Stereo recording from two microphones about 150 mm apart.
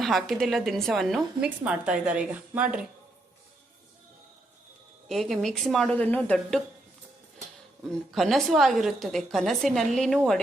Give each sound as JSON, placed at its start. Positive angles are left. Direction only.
{"t": 0.0, "sound": "a woman's voice", "side_deg": 0}
{"t": 5.0, "sound": "a woman's voice", "side_deg": 0}
{"t": 8.1, "sound": "a woman's voice", "side_deg": 0}